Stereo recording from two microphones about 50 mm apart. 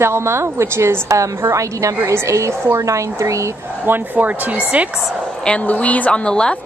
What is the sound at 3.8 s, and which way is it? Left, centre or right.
Speech, right.